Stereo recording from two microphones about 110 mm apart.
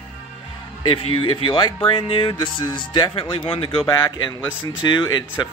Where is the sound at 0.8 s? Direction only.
50° left (ahead or behind).